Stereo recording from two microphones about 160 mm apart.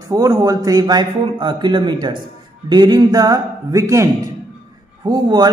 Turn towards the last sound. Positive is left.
turn(degrees=-25)  # may be behind; listen again after turning